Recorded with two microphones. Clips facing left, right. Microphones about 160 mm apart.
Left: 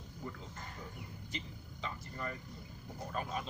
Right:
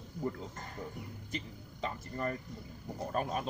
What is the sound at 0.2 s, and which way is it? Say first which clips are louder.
Speech: right 8 dB; 45° right (ahead or behind).